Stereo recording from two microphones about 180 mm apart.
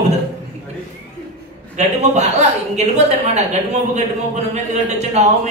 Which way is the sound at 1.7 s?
40° right (ahead or behind).